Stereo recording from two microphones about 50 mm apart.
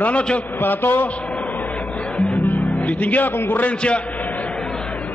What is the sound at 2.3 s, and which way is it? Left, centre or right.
Music, left.